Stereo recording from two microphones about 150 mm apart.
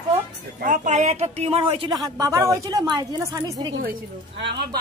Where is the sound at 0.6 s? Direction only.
55° right (ahead or behind); by 1.9 s 35° right (ahead or behind).